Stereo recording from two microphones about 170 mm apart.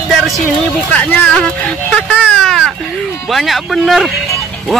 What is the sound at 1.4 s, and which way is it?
Speech, 5° left (ahead or behind).